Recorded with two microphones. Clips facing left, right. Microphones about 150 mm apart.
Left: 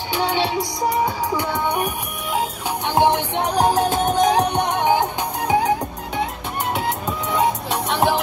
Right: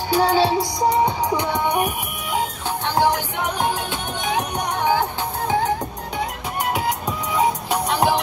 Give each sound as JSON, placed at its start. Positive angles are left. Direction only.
{"t": 0.1, "sound": "music", "side_deg": -35}
{"t": 2.9, "sound": "music", "side_deg": 25}
{"t": 7.3, "sound": "music", "side_deg": 0}